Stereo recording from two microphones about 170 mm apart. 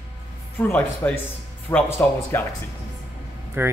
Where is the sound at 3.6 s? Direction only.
15° right (ahead or behind).